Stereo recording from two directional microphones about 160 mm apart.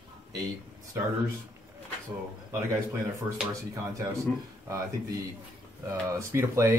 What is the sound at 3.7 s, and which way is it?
Speech, 20° right (ahead or behind).